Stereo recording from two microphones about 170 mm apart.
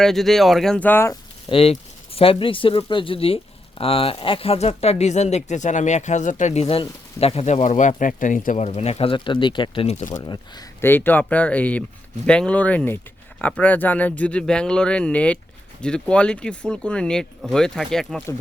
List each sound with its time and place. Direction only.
0.0 s speech: centre (ahead or behind)
1.5 s speech: 35° left (ahead or behind)
10.2 s speech: 25° left (ahead or behind)
10.8 s speech: 10° left (ahead or behind)